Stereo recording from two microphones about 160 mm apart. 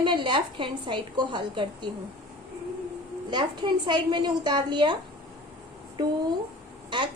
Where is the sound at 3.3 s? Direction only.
30° right (ahead or behind).